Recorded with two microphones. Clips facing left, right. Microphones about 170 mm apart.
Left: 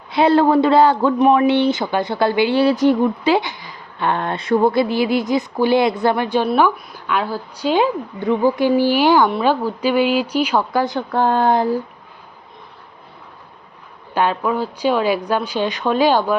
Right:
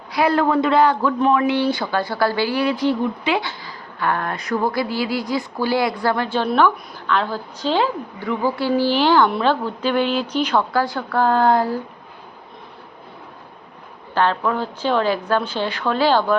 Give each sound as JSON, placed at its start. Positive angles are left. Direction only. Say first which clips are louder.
{"t": 0.1, "sound": "speech", "louder": "left 4 dB", "side_deg": 25}
{"t": 2.7, "sound": "speech", "louder": "left 5 dB", "side_deg": 45}
{"t": 3.4, "sound": "speech", "louder": "even", "side_deg": 20}
{"t": 14.1, "sound": "speech", "louder": "left 1 dB", "side_deg": 15}